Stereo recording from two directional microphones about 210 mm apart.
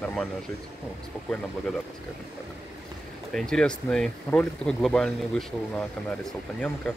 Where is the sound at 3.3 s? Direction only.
5° left (ahead or behind).